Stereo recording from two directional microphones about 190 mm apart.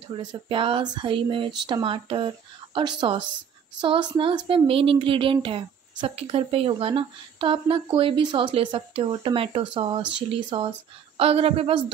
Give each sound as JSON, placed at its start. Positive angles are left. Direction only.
{"t": 0.1, "sound": "a woman's voice", "side_deg": -25}